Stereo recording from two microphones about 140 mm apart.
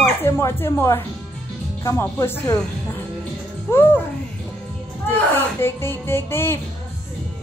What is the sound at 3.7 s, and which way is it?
Music, 15° left (ahead or behind).